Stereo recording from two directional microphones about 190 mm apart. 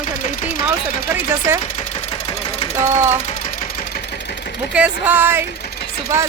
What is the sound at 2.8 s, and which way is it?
Speech, 15° right (ahead or behind).